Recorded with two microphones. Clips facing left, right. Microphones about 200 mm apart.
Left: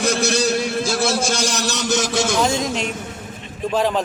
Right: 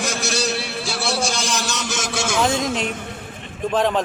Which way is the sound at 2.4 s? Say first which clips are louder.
Even; centre (ahead or behind).